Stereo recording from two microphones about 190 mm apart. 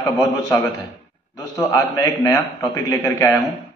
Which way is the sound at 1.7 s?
15° left (ahead or behind).